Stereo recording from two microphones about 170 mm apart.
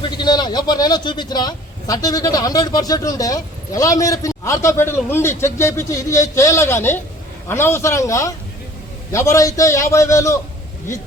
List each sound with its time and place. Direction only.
0.0 s a man's voice: 25° left (ahead or behind)